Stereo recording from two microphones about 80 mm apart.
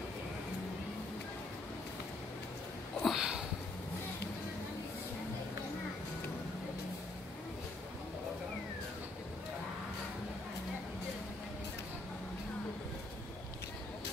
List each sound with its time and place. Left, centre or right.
3.0 s sniff: centre